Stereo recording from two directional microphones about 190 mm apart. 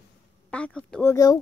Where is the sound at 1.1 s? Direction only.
20° left (ahead or behind).